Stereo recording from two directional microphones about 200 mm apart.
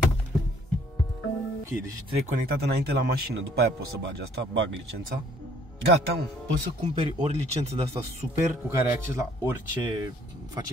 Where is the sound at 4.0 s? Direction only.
60° right (ahead or behind).